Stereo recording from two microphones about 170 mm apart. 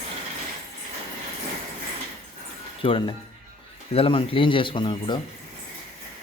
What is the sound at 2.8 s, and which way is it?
Speech, 30° left (ahead or behind).